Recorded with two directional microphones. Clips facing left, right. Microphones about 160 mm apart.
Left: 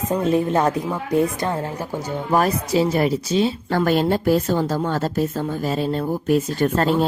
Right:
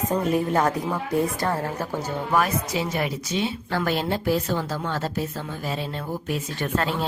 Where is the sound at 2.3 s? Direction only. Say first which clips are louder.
Left 5 dB; 35° left (ahead or behind).